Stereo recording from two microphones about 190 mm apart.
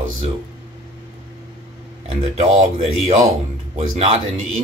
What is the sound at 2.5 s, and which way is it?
A man's voice, 30° right (ahead or behind).